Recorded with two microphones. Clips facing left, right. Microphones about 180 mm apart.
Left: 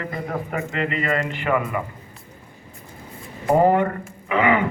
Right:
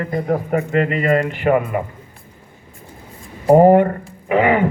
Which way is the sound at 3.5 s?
40° right (ahead or behind).